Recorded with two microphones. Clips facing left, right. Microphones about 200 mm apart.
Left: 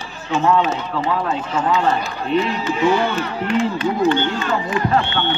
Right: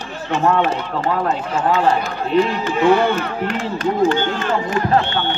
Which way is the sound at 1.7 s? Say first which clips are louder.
Right 3 dB; 50° right (ahead or behind).